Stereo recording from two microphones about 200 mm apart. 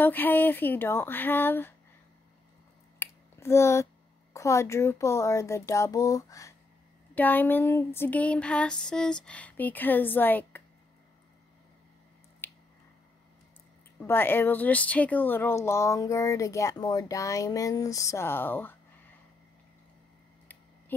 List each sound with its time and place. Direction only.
0.0 s speech: 10° left (ahead or behind)
3.0 s a sound: 15° left (ahead or behind)
4.3 s speech: 15° left (ahead or behind)
12.4 s finger snapping: 10° left (ahead or behind)
13.9 s speech: 10° left (ahead or behind)